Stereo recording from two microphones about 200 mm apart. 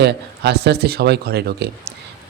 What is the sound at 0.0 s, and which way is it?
A man's voice, 55° right (ahead or behind).